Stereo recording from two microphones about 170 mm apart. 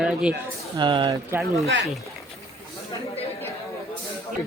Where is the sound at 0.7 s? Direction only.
30° right (ahead or behind).